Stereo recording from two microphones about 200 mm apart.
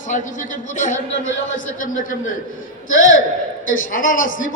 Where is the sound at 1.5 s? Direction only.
40° left (ahead or behind).